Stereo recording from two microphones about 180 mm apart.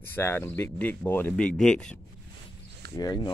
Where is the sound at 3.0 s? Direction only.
20° left (ahead or behind).